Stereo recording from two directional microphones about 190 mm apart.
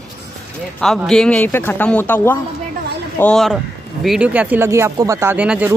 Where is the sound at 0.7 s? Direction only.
Centre (ahead or behind).